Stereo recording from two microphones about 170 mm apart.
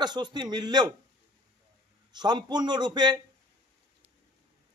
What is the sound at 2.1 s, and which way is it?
Speech, 25° right (ahead or behind).